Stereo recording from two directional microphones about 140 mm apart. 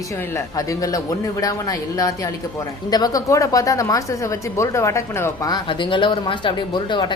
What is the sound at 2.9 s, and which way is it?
Speech, 25° left (ahead or behind).